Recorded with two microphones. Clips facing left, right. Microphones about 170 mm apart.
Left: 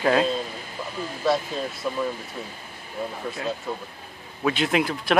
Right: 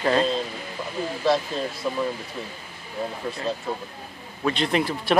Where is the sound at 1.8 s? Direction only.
5° left (ahead or behind).